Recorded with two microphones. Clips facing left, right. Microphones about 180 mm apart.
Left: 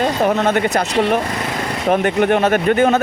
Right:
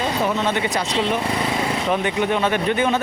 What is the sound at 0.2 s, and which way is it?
Speech, 55° left (ahead or behind).